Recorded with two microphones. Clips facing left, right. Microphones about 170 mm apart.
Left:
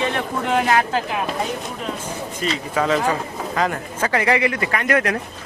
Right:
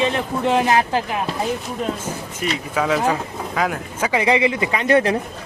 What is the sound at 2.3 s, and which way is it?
Speech, 5° right (ahead or behind).